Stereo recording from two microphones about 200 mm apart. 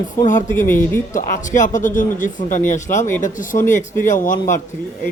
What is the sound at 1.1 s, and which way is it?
Speech, 40° left (ahead or behind).